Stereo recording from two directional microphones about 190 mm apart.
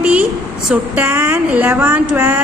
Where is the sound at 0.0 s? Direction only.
5° right (ahead or behind).